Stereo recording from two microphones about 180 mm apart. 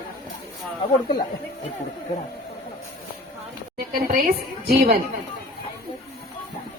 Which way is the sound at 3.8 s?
55° right (ahead or behind).